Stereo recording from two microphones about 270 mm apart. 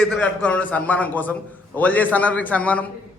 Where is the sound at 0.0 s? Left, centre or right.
Centre.